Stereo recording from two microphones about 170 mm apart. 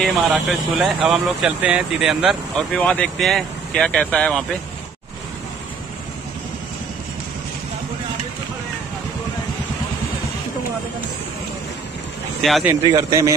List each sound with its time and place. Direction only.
0.0 s speech: centre (ahead or behind)
12.4 s speech: centre (ahead or behind)
12.8 s a man's voice: 20° right (ahead or behind)